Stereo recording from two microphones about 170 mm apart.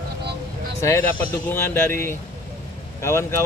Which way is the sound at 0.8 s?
15° left (ahead or behind).